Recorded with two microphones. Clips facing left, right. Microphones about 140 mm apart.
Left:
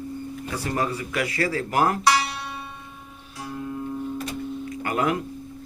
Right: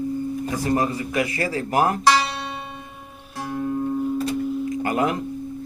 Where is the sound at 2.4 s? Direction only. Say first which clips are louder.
Right 3 dB; 70° right (ahead or behind); by 4.0 s 50° right (ahead or behind).